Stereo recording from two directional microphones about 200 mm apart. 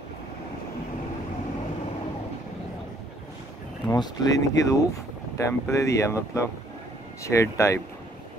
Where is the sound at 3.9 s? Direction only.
20° left (ahead or behind).